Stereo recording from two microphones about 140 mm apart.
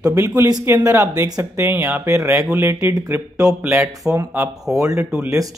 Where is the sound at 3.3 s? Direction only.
5° right (ahead or behind).